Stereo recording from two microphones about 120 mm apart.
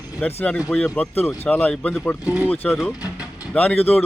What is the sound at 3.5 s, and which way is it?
Speech, 15° left (ahead or behind).